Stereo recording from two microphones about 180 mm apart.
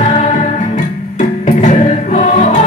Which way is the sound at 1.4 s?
45° left (ahead or behind).